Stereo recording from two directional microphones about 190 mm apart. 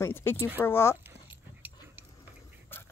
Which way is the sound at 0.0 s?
10° left (ahead or behind).